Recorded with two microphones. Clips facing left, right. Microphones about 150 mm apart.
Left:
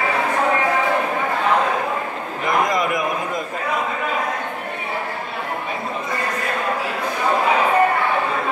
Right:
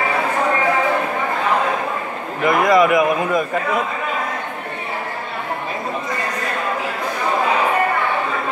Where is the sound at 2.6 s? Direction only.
65° right (ahead or behind).